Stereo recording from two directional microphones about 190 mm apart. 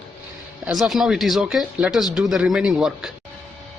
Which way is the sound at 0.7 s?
Centre (ahead or behind).